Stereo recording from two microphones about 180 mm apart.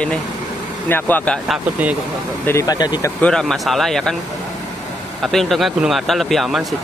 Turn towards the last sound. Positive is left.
turn(degrees=0)  # may be behind; listen again after turning